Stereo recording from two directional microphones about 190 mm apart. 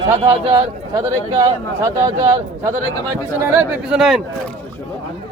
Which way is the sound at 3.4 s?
5° right (ahead or behind).